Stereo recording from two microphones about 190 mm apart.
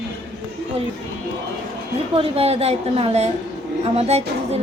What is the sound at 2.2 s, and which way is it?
A woman's voice, 30° right (ahead or behind).